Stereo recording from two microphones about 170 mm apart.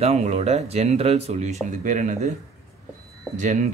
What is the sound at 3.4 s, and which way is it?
Speech, 45° right (ahead or behind).